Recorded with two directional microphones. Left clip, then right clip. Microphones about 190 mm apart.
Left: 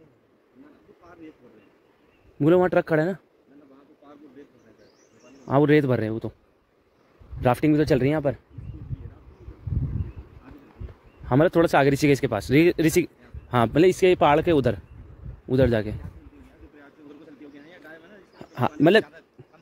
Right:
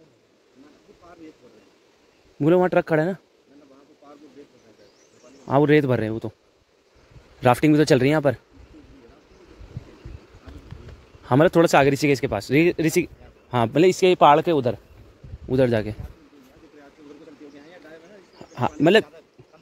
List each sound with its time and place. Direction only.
2.3 s speech: centre (ahead or behind)
5.4 s speech: 5° right (ahead or behind)
7.4 s speech: 15° right (ahead or behind)
11.2 s speech: 10° right (ahead or behind)
11.9 s speech: 5° left (ahead or behind)
15.4 s speech: centre (ahead or behind)
18.4 s speech: centre (ahead or behind)